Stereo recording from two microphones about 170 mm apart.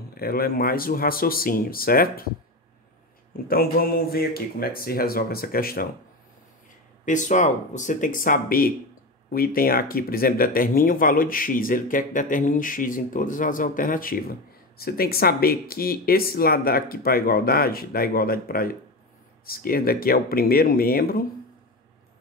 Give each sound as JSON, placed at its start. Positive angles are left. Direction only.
{"t": 0.1, "sound": "speech", "side_deg": 65}
{"t": 3.4, "sound": "speech", "side_deg": 60}
{"t": 7.1, "sound": "speech", "side_deg": 45}